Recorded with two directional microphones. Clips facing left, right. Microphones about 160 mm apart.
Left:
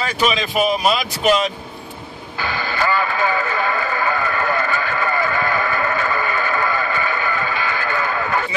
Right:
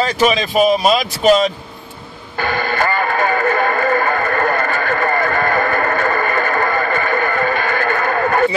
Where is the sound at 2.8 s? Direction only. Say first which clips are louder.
Even; 50° right (ahead or behind).